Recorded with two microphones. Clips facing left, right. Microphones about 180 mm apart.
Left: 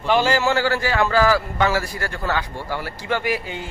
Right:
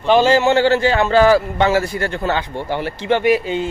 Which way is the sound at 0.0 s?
20° right (ahead or behind).